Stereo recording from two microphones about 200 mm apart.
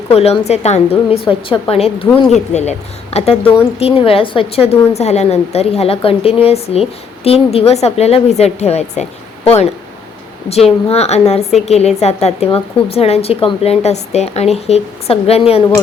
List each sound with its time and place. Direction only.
0.1 s a woman's voice: 30° left (ahead or behind)
10.8 s a woman's voice: 30° left (ahead or behind)